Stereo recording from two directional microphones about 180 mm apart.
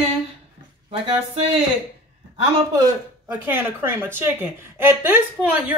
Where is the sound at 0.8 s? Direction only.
30° right (ahead or behind).